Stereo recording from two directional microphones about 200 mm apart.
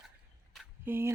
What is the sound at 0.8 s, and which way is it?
Speech, 10° right (ahead or behind).